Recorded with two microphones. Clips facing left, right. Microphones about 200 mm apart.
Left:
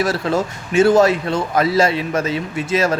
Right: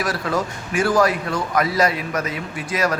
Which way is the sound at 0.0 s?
25° left (ahead or behind).